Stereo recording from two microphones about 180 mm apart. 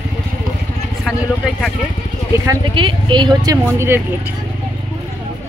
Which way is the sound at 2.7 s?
30° right (ahead or behind).